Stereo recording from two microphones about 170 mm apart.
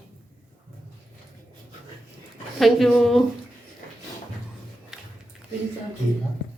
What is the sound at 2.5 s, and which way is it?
Speech, centre (ahead or behind).